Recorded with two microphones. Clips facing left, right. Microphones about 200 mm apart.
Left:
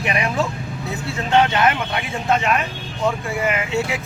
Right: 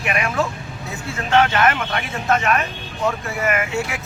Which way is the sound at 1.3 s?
15° left (ahead or behind).